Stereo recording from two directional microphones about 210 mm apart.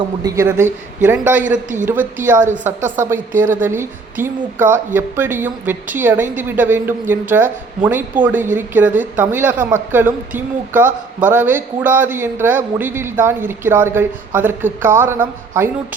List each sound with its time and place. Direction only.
0.2 s speech: 15° right (ahead or behind)